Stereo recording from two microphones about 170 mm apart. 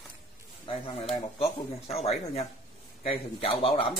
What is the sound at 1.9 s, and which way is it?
Speech, 40° left (ahead or behind).